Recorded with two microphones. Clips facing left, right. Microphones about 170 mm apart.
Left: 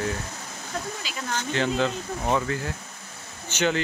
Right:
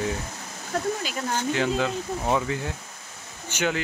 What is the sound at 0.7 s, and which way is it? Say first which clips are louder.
Speech: right 6 dB; 60° right (ahead or behind).